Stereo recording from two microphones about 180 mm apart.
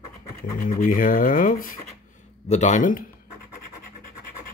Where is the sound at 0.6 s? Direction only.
45° left (ahead or behind).